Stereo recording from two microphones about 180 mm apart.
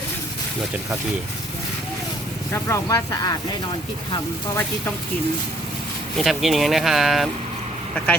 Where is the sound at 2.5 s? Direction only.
15° left (ahead or behind).